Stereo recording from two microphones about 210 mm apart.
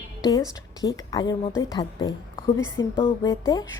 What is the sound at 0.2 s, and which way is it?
A woman's voice, 15° left (ahead or behind).